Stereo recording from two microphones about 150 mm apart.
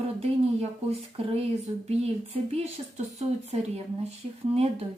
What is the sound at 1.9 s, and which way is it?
Speech, 45° right (ahead or behind).